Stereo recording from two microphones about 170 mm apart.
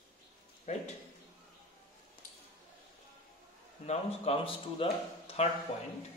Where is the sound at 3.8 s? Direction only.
35° left (ahead or behind).